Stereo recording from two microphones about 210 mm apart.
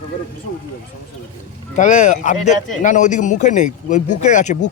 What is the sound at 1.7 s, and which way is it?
Speech, 35° left (ahead or behind).